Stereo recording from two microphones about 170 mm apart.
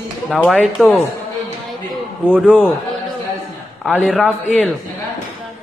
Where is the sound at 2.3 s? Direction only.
10° right (ahead or behind).